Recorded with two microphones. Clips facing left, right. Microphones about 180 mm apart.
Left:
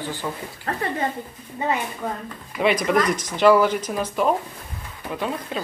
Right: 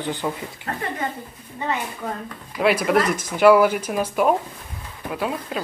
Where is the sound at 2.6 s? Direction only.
5° right (ahead or behind).